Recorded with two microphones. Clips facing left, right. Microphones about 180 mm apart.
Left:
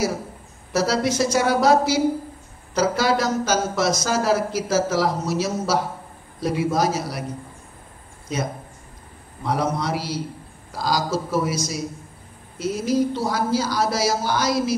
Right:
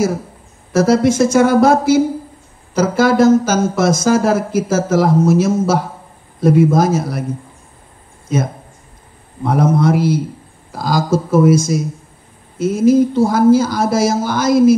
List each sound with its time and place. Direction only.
0.7 s speech: 50° right (ahead or behind)
9.4 s speech: 50° right (ahead or behind)